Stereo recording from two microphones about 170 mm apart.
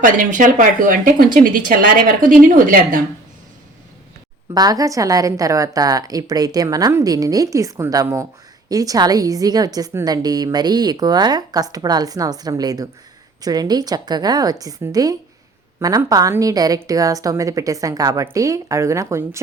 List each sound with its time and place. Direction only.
0.0 s a woman's voice: 50° right (ahead or behind)
4.5 s a woman's voice: 20° right (ahead or behind)